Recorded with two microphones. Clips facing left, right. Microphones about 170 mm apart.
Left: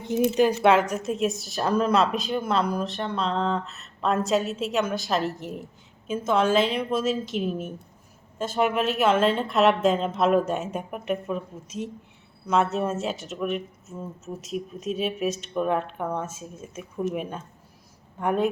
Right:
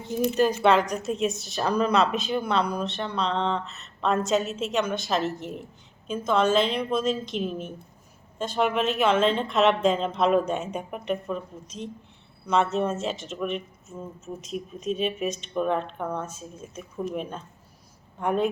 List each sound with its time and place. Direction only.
0.3 s speech: 10° left (ahead or behind)
18.2 s speech: centre (ahead or behind)